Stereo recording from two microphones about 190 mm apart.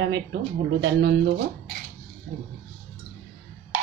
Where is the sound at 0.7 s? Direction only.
65° right (ahead or behind).